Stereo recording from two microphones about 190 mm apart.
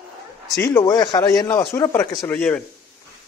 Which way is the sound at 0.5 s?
15° left (ahead or behind).